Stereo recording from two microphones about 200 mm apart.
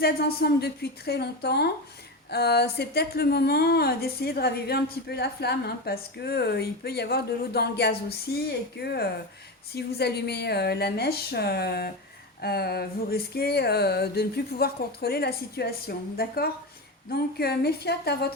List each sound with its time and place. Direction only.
0.0 s speech: 50° left (ahead or behind)